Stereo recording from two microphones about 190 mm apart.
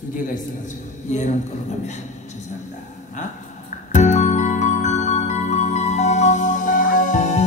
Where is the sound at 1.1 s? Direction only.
40° left (ahead or behind).